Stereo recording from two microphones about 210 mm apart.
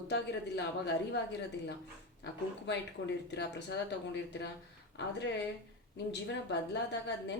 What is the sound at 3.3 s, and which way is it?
Speech, 55° left (ahead or behind).